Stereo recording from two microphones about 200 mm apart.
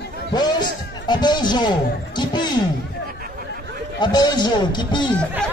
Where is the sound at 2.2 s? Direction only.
20° left (ahead or behind).